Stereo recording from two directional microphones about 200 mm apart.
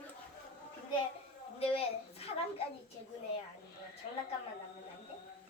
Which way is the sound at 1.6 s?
30° left (ahead or behind).